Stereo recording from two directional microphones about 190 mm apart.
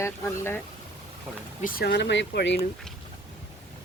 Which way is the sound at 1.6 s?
50° left (ahead or behind).